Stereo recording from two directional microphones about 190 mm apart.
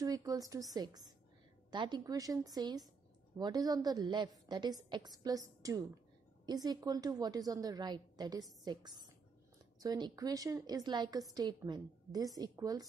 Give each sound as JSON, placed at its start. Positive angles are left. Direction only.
{"t": 0.0, "sound": "a woman's voice", "side_deg": -20}